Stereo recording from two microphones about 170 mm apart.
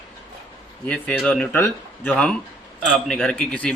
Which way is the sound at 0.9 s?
5° left (ahead or behind).